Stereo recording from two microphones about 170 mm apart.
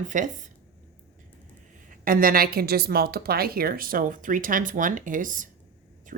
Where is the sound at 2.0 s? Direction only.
55° right (ahead or behind).